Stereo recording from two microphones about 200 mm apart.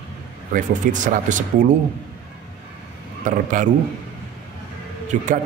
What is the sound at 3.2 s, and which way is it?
Speech, 40° right (ahead or behind).